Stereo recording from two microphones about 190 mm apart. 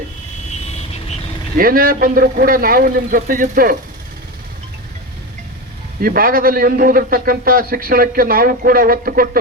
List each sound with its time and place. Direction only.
1.5 s a man's voice: 50° right (ahead or behind)
6.0 s a man's voice: 50° right (ahead or behind)